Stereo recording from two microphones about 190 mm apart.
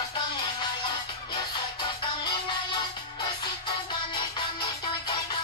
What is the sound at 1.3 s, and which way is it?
Music, 25° left (ahead or behind).